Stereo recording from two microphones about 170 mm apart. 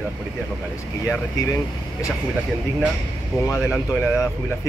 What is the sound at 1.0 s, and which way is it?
Speech, 20° left (ahead or behind).